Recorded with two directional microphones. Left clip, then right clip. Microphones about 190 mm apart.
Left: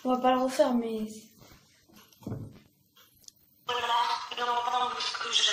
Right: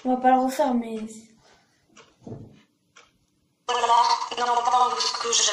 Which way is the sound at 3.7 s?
45° right (ahead or behind).